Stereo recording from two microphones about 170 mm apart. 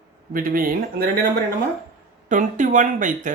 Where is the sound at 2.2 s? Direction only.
50° right (ahead or behind).